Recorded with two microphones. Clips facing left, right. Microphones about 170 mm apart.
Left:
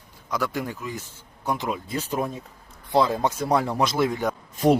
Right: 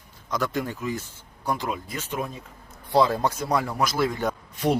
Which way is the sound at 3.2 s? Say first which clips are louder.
Left 2 dB; 30° left (ahead or behind).